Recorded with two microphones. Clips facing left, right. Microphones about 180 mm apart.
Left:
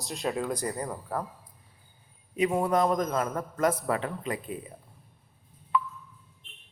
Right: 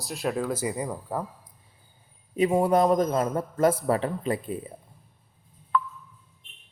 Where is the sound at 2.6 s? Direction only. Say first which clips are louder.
Right 5 dB; 30° right (ahead or behind).